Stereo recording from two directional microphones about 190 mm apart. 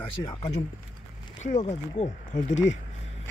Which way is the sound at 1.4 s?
40° left (ahead or behind).